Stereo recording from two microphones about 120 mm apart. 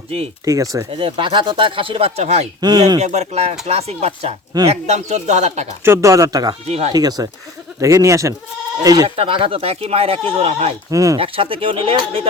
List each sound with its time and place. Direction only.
0.4 s speech: 30° right (ahead or behind)
0.9 s speech: 50° right (ahead or behind)
2.6 s speech: 35° right (ahead or behind)
3.0 s speech: 65° right (ahead or behind)
5.8 s speech: 25° right (ahead or behind)
6.7 s speech: 65° right (ahead or behind)
6.9 s speech: 30° right (ahead or behind)
9.0 s speech: 50° right (ahead or behind)
10.9 s speech: 30° right (ahead or behind)
11.2 s speech: 50° right (ahead or behind)